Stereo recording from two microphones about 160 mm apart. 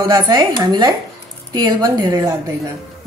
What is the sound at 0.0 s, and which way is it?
A woman's voice, 25° right (ahead or behind).